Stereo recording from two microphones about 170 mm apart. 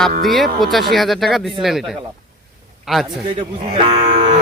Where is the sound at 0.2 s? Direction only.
Centre (ahead or behind).